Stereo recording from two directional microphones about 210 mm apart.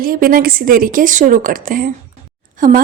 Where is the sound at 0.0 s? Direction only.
45° right (ahead or behind).